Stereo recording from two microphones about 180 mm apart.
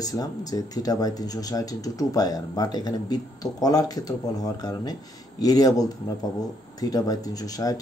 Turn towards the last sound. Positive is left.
turn(degrees=20)  # may be behind; listen again after turning